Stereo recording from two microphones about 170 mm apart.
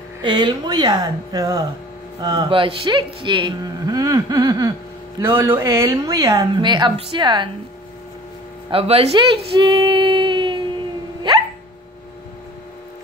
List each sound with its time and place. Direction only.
0.2 s speech: 25° right (ahead or behind)
8.6 s speech: 35° right (ahead or behind)
9.6 s a sound: 30° right (ahead or behind)